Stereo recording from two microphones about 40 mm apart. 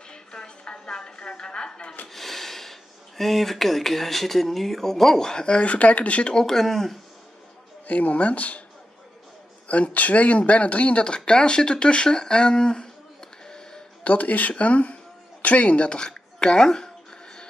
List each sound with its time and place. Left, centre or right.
0.1 s a sound: centre
2.1 s speech: centre; by 6.3 s left
6.3 s speech: centre
7.8 s speech: left
9.7 s speech: left; by 13.8 s centre
14.0 s speech: left
16.1 s a sound: centre